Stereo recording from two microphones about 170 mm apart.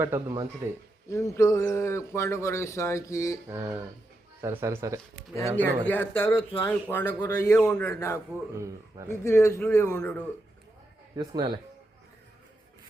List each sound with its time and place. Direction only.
0.0 s speech: 15° right (ahead or behind)
1.1 s speech: 15° left (ahead or behind)
3.5 s speech: 20° right (ahead or behind)
5.5 s speech: 10° left (ahead or behind)
7.2 s a man's voice: 20° left (ahead or behind)
7.7 s speech: 10° left (ahead or behind)
7.9 s speech: 20° left (ahead or behind)
8.5 s speech: 15° right (ahead or behind)
9.2 s speech: 15° left (ahead or behind)
11.2 s speech: 25° right (ahead or behind)